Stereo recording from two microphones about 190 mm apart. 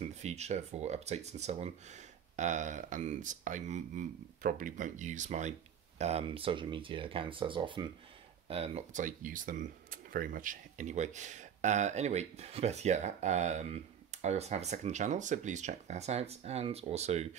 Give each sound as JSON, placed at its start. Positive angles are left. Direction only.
{"t": 0.2, "sound": "speech", "side_deg": -35}